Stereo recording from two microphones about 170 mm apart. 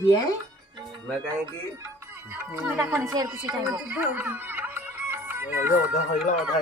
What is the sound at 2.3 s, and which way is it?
Music, 10° right (ahead or behind).